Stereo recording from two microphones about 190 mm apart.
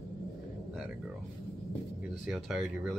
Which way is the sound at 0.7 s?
5° right (ahead or behind).